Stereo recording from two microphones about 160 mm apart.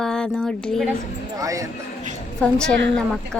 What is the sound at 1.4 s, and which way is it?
Speech, 20° right (ahead or behind).